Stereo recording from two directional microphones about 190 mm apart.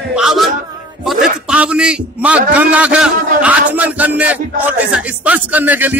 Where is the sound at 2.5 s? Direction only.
5° right (ahead or behind).